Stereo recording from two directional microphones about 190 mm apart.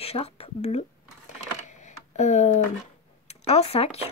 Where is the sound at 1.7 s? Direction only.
40° left (ahead or behind).